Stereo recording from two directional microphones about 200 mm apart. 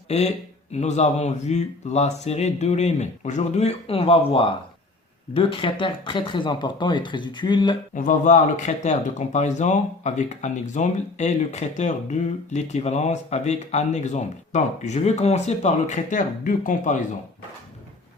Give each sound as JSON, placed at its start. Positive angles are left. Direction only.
{"t": 0.1, "sound": "speech", "side_deg": 35}
{"t": 7.9, "sound": "speech", "side_deg": 40}